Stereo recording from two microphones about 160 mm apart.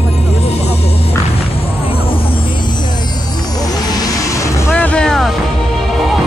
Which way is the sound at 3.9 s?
25° left (ahead or behind).